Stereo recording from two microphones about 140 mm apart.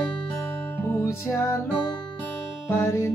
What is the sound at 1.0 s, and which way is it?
Music, 20° left (ahead or behind).